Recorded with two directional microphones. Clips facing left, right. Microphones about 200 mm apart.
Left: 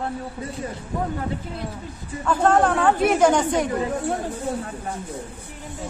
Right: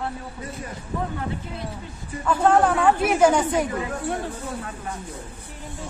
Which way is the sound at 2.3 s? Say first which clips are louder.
Even; 5° right (ahead or behind).